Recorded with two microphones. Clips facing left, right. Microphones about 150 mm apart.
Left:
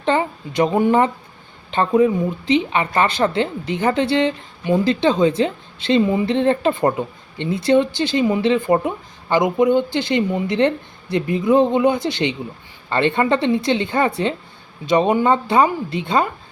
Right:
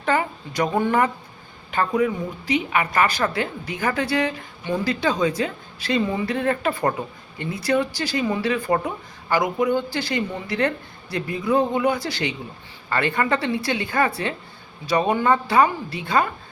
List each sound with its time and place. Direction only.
0.0 s a woman's voice: 25° left (ahead or behind)